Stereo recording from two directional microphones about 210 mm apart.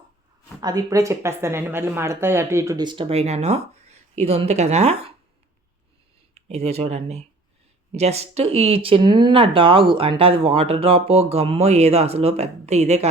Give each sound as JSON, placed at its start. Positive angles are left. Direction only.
{"t": 0.6, "sound": "speech", "side_deg": -15}
{"t": 6.3, "sound": "speech", "side_deg": -30}